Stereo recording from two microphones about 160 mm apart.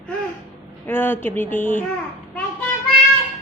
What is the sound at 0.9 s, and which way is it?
Speech, 15° left (ahead or behind).